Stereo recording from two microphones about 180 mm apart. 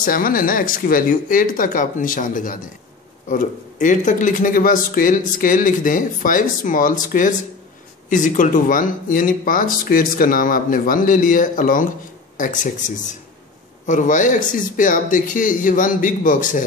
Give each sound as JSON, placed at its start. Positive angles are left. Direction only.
{"t": 0.0, "sound": "speech", "side_deg": 50}
{"t": 3.8, "sound": "speech", "side_deg": 45}